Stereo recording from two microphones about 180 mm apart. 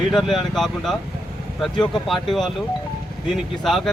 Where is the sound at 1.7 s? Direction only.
25° left (ahead or behind).